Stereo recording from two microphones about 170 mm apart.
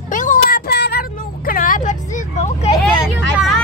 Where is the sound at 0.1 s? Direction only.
50° left (ahead or behind).